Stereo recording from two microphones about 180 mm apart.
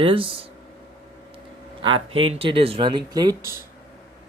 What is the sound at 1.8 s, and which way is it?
Speech, 30° right (ahead or behind).